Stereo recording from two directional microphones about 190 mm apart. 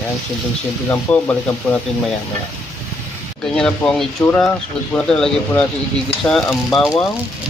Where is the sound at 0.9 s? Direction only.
10° left (ahead or behind).